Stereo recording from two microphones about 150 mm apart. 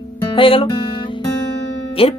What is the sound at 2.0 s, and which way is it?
Speech, 40° left (ahead or behind).